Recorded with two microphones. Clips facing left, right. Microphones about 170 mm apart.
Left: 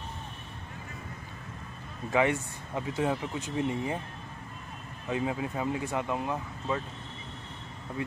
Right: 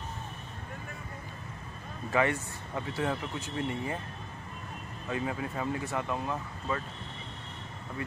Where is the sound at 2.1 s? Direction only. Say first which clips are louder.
Left 2 dB; 15° left (ahead or behind).